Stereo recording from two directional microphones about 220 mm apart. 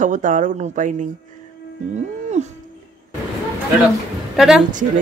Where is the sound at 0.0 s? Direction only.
35° right (ahead or behind).